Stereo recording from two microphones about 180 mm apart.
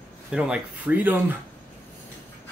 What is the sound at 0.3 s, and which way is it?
Speech, 5° right (ahead or behind).